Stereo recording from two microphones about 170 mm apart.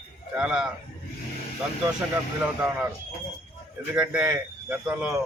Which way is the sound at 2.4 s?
5° right (ahead or behind).